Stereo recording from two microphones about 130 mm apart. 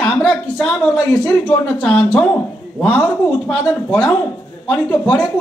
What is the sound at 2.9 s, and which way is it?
A woman's voice, 15° left (ahead or behind).